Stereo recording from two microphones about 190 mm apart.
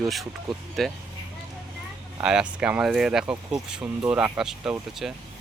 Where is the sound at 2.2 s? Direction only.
5° right (ahead or behind).